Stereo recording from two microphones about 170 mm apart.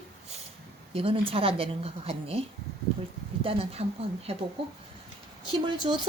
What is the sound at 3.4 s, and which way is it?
Speech, 35° right (ahead or behind).